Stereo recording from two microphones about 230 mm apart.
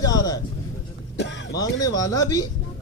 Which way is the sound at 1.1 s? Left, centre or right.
Left.